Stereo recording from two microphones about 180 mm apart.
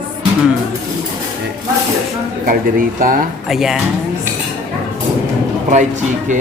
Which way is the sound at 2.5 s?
50° right (ahead or behind).